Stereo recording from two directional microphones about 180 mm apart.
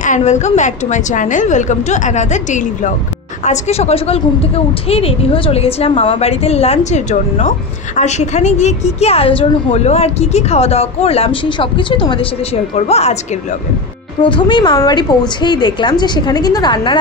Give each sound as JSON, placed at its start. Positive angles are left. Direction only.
{"t": 0.0, "sound": "a woman's voice", "side_deg": 40}
{"t": 14.2, "sound": "a woman's voice", "side_deg": 25}